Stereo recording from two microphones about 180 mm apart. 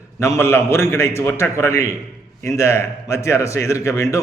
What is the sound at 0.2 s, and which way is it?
A man's voice, 15° left (ahead or behind).